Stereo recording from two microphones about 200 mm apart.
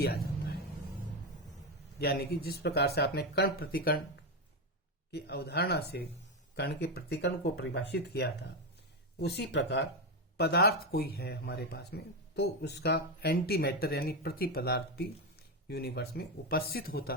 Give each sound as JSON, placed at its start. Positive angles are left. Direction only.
{"t": 2.0, "sound": "speech", "side_deg": 50}
{"t": 5.1, "sound": "speech", "side_deg": 55}